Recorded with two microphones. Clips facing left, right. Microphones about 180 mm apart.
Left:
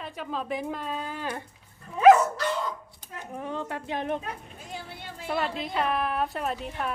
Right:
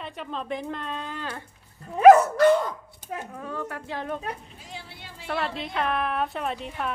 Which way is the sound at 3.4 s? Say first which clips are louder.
Left 1 dB; 20° left (ahead or behind).